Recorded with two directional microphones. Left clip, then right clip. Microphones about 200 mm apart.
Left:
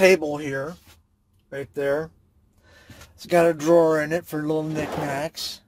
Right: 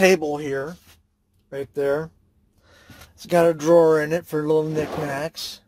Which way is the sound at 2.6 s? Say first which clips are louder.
Right 1 dB; 15° right (ahead or behind).